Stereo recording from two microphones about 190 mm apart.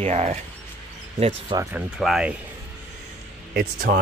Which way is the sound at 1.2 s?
25° right (ahead or behind).